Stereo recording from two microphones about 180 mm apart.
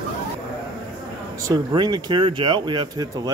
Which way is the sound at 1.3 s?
20° right (ahead or behind).